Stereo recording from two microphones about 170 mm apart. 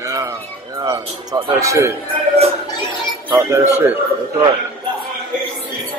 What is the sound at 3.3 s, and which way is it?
Speech, 15° right (ahead or behind).